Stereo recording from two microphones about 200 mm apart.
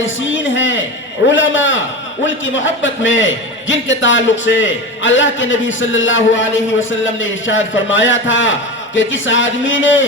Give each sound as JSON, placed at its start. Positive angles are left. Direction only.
{"t": 0.5, "sound": "a man's voice", "side_deg": 70}